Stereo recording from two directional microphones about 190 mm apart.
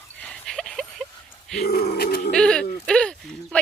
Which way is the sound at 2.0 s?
50° left (ahead or behind).